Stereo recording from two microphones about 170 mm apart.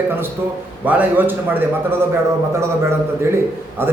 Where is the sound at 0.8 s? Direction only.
10° right (ahead or behind).